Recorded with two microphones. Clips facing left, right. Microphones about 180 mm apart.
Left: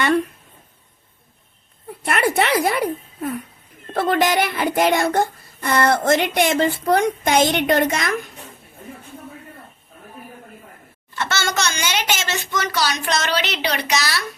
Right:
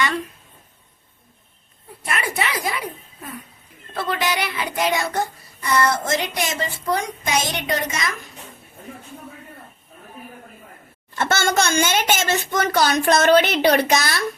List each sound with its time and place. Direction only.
2.0 s a sound: 60° left (ahead or behind)
3.9 s child singing: 50° left (ahead or behind)
11.2 s speech: 50° right (ahead or behind)